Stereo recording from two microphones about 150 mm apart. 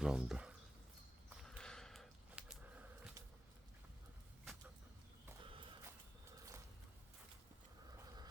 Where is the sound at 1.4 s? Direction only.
5° left (ahead or behind).